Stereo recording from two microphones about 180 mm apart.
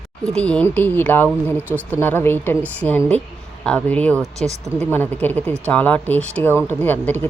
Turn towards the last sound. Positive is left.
turn(degrees=10)  # may be behind; listen again after turning